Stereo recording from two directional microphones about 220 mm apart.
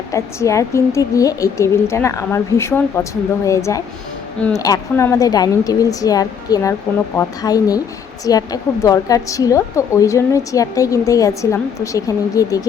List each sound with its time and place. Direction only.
0.1 s a woman's voice: 15° left (ahead or behind)